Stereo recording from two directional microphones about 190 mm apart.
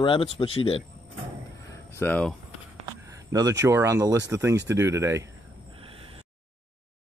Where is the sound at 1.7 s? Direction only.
10° left (ahead or behind).